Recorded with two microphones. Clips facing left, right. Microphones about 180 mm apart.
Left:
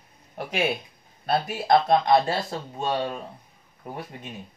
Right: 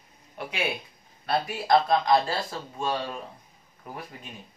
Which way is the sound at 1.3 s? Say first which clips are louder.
Left 2 dB; 25° left (ahead or behind).